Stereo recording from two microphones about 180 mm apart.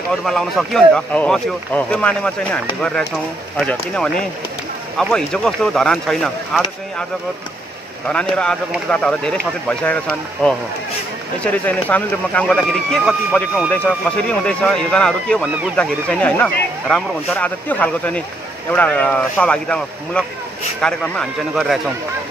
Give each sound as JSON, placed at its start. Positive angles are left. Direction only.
{"t": 0.2, "sound": "speech", "side_deg": 0}
{"t": 8.1, "sound": "speech", "side_deg": 5}